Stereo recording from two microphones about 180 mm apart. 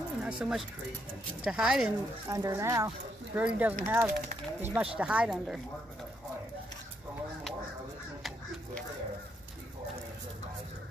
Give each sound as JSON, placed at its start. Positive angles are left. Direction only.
{"t": 0.2, "sound": "speech", "side_deg": -5}
{"t": 2.2, "sound": "speech", "side_deg": -15}